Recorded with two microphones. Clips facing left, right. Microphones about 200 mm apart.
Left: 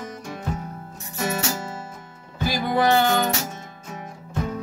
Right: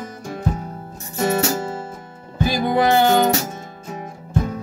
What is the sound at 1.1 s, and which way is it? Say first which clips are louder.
Music: right 7 dB; 30° right (ahead or behind).